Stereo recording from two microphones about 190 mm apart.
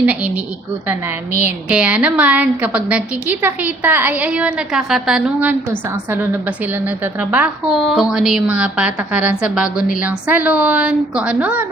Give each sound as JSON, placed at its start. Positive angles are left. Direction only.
{"t": 0.0, "sound": "a woman's voice", "side_deg": -5}
{"t": 1.3, "sound": "speech", "side_deg": 40}
{"t": 1.7, "sound": "a woman's voice", "side_deg": -5}